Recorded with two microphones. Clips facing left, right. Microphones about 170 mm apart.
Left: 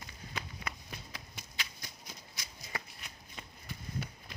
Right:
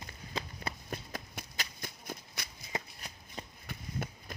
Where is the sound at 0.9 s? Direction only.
45° right (ahead or behind).